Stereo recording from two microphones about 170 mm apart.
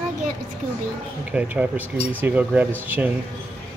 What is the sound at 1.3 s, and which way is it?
Speech, 10° right (ahead or behind).